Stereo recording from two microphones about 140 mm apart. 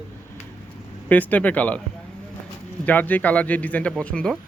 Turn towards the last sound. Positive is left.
turn(degrees=5)  # may be behind; listen again after turning